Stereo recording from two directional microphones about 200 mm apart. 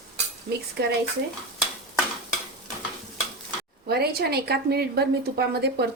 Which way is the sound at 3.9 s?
50° right (ahead or behind).